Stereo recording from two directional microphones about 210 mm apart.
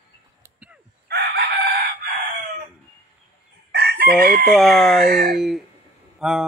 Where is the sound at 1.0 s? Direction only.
50° right (ahead or behind).